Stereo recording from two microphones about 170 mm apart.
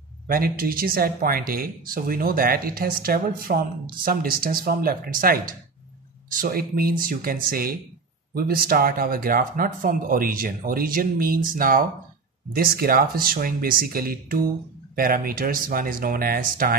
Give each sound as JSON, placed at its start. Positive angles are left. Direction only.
{"t": 0.3, "sound": "speech", "side_deg": -60}